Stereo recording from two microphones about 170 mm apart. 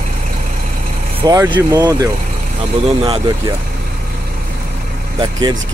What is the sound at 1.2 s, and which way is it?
Speech, 20° right (ahead or behind).